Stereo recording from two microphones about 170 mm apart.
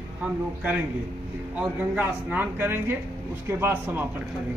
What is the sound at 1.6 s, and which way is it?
Speech, 10° right (ahead or behind).